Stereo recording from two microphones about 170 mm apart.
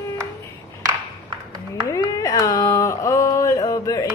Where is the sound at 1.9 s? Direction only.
20° left (ahead or behind).